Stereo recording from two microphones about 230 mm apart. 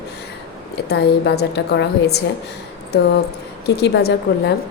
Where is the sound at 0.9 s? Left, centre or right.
Left.